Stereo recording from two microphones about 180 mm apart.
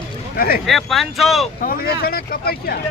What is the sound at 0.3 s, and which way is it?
Speech, 55° left (ahead or behind).